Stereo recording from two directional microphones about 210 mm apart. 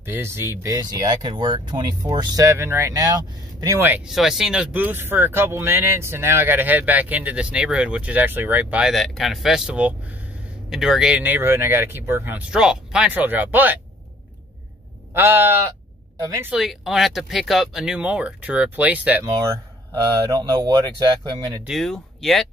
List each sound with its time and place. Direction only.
0.0 s speech: 10° right (ahead or behind)
15.1 s speech: 10° right (ahead or behind)
16.5 s speech: centre (ahead or behind); by 21.6 s 20° right (ahead or behind)
21.6 s speech: centre (ahead or behind)